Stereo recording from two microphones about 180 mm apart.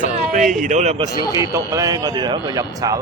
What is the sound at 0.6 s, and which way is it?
Speech, 40° right (ahead or behind).